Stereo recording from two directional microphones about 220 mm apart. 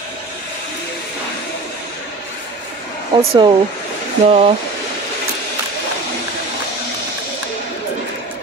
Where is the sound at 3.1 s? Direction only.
20° right (ahead or behind).